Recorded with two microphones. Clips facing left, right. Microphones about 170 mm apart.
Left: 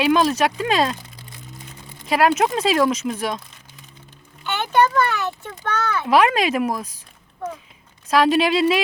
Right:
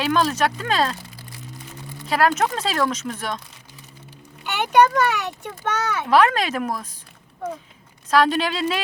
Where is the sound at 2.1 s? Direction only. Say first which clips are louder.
Left 2 dB; 15° left (ahead or behind).